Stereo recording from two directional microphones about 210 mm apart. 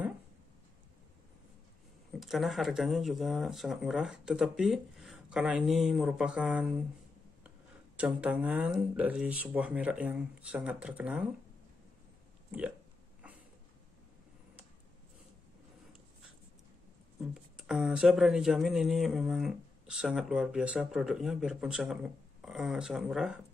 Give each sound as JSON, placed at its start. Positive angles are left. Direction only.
{"t": 2.1, "sound": "speech", "side_deg": 0}
{"t": 8.0, "sound": "speech", "side_deg": -5}
{"t": 12.4, "sound": "burping", "side_deg": -5}
{"t": 17.2, "sound": "speech", "side_deg": -5}